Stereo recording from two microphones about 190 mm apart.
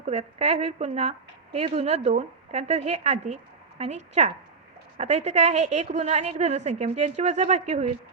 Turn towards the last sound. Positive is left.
turn(degrees=-35)  # may be behind; listen again after turning